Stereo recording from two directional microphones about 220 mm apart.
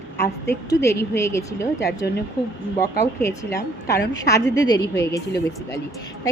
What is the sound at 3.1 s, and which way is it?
A woman's voice, 10° left (ahead or behind).